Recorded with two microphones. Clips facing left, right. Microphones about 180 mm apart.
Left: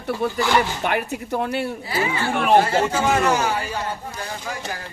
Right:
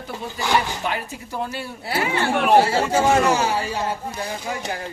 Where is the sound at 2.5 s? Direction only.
30° right (ahead or behind).